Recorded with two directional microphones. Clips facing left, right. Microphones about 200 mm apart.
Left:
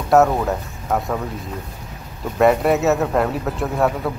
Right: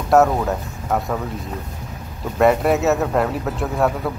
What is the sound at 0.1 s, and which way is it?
Speech, centre (ahead or behind).